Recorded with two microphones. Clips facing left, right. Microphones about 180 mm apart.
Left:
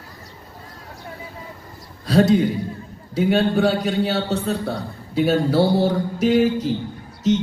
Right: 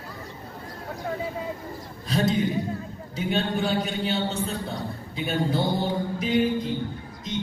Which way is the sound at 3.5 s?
70° left (ahead or behind).